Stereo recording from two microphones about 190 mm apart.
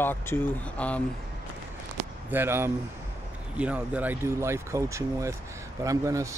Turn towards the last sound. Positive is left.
turn(degrees=-15)  # may be behind; listen again after turning